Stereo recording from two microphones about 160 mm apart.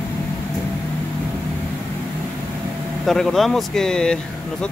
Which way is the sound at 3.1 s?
Centre (ahead or behind).